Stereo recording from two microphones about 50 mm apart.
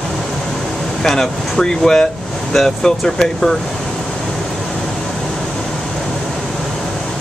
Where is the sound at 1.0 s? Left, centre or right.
Centre.